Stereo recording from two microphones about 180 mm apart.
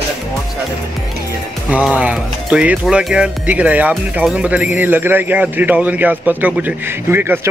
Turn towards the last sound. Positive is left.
turn(degrees=-10)  # may be behind; listen again after turning